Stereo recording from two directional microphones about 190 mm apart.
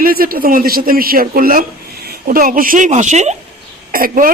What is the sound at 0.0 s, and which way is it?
A woman's voice, 50° right (ahead or behind).